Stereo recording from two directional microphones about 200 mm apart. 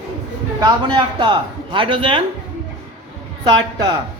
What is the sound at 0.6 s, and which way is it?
A man's voice, 20° right (ahead or behind).